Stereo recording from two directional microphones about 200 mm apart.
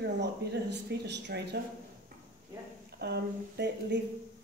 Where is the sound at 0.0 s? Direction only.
55° right (ahead or behind).